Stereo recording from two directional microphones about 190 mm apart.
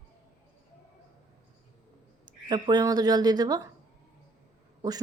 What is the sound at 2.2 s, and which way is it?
Speech, 20° right (ahead or behind).